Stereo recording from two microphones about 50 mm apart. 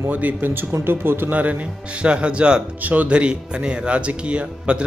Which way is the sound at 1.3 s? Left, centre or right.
Right.